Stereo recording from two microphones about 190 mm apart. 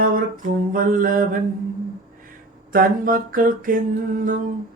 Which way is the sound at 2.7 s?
45° right (ahead or behind).